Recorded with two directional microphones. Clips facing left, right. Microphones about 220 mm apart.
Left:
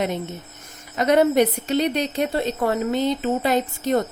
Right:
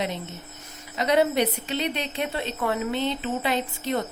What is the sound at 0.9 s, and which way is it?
A woman's voice, 45° left (ahead or behind).